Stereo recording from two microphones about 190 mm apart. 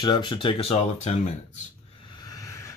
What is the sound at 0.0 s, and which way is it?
Speech, 25° left (ahead or behind).